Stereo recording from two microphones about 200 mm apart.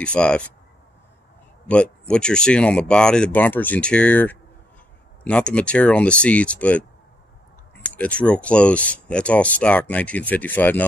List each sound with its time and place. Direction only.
0.0 s speech: 5° left (ahead or behind)
1.7 s speech: 5° left (ahead or behind)
7.9 s speech: 5° left (ahead or behind)